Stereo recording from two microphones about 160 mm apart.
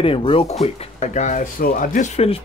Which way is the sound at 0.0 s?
35° left (ahead or behind).